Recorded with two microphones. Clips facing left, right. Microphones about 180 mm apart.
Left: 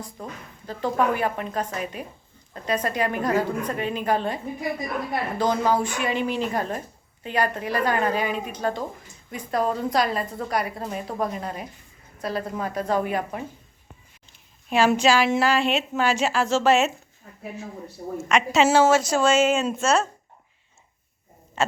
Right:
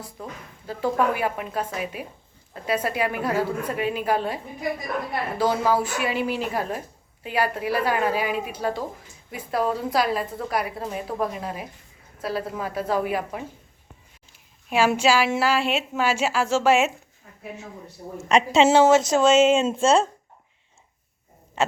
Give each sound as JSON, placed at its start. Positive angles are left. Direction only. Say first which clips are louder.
{"t": 0.2, "sound": "a woman's voice", "louder": "even", "side_deg": -5}
{"t": 5.4, "sound": "speech", "louder": "right 1 dB", "side_deg": -5}
{"t": 14.7, "sound": "a woman's voice", "louder": "left 1 dB", "side_deg": -10}
{"t": 18.3, "sound": "a woman's voice", "louder": "right 2 dB", "side_deg": -30}